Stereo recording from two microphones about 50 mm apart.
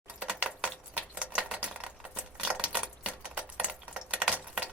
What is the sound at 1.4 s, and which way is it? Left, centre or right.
Typewriter, centre.